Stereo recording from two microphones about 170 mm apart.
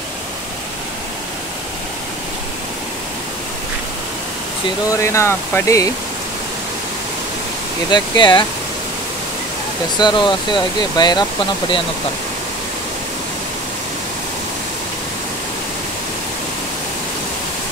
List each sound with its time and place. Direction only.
4.9 s speech: 15° left (ahead or behind)
7.9 s speech: 25° left (ahead or behind)
9.9 s speech: 25° left (ahead or behind)